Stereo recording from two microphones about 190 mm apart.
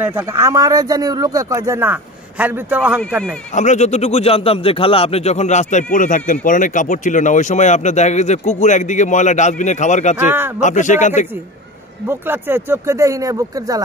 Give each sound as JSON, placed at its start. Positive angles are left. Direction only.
{"t": 0.0, "sound": "speech", "side_deg": -10}
{"t": 3.5, "sound": "speech", "side_deg": 40}
{"t": 10.1, "sound": "speech", "side_deg": -10}
{"t": 10.6, "sound": "speech", "side_deg": 40}
{"t": 12.1, "sound": "speech", "side_deg": -10}